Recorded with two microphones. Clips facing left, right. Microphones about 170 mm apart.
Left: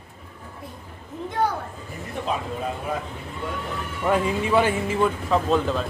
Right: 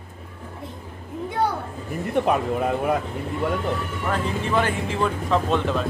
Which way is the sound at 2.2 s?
60° right (ahead or behind).